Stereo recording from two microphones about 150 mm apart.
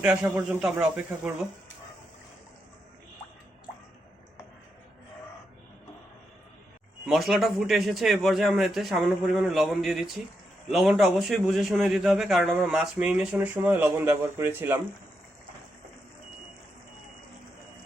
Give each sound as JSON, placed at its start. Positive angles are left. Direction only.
{"t": 0.0, "sound": "a man's voice", "side_deg": -5}
{"t": 7.0, "sound": "a man's voice", "side_deg": 0}